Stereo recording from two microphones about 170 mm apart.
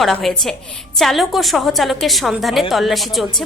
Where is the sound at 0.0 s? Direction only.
Centre (ahead or behind).